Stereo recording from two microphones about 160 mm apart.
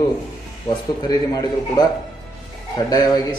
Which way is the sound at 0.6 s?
25° left (ahead or behind).